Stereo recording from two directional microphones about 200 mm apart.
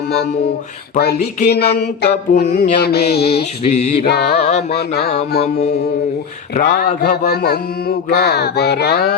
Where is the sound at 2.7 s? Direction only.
55° left (ahead or behind).